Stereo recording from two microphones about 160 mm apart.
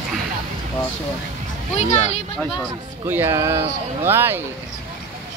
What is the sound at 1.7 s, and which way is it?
Speech, 45° left (ahead or behind).